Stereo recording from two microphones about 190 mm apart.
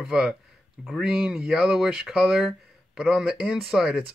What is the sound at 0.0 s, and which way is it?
Speech, 5° right (ahead or behind).